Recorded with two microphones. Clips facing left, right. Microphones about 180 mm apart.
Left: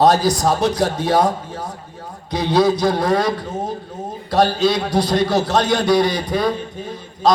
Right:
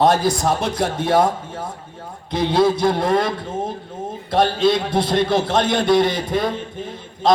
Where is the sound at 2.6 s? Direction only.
25° right (ahead or behind).